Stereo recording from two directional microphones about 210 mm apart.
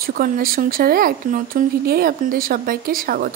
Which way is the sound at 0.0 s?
45° right (ahead or behind).